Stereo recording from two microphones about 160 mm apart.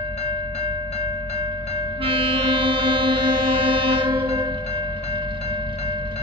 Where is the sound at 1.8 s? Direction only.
35° right (ahead or behind).